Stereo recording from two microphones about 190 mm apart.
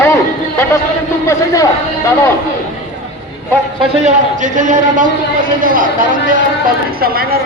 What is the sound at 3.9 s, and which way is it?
A man's voice, 35° right (ahead or behind).